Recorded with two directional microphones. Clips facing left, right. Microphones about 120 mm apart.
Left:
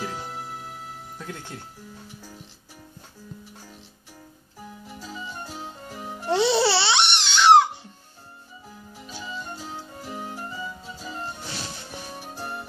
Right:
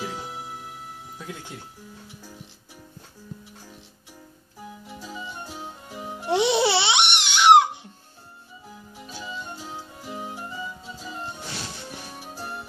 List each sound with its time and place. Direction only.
0.0 s music: centre (ahead or behind)
4.8 s music: centre (ahead or behind); by 7.9 s 20° right (ahead or behind)
8.9 s music: centre (ahead or behind)